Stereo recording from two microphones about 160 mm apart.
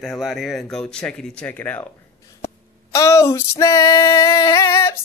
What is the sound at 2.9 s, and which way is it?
Female singing, 20° left (ahead or behind).